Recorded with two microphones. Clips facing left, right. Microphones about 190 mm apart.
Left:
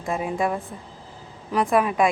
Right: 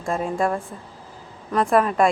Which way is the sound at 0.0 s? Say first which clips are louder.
Right 2 dB; 5° left (ahead or behind).